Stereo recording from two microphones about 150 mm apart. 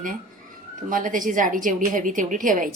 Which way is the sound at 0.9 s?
60° right (ahead or behind).